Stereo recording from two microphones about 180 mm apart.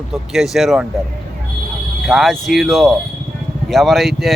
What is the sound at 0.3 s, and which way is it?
Speech, centre (ahead or behind).